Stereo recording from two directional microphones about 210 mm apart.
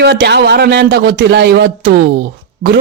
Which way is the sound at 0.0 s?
55° right (ahead or behind).